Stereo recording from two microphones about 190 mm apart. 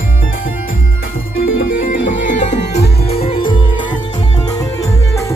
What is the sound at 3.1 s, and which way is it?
Music, 30° left (ahead or behind).